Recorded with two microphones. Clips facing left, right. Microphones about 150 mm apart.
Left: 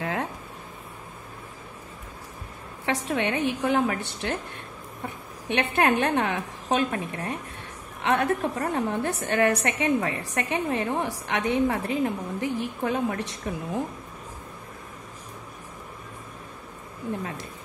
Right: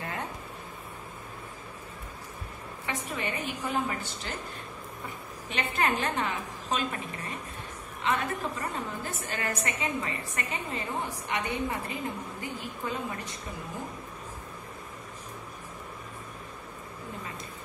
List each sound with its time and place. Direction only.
0.0 s a sound: 90° left
2.8 s a woman's voice: 85° left
5.5 s a woman's voice: 65° left (ahead or behind); by 13.4 s 85° left